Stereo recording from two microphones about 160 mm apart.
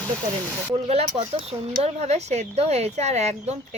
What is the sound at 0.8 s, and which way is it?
Speech, 40° right (ahead or behind).